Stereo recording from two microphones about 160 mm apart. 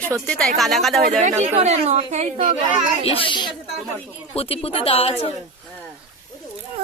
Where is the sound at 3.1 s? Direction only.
35° left (ahead or behind).